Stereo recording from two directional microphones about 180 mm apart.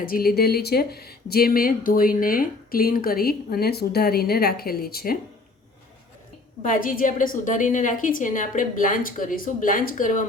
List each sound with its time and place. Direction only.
0.0 s speech: 55° left (ahead or behind)
6.6 s a woman's voice: 50° left (ahead or behind)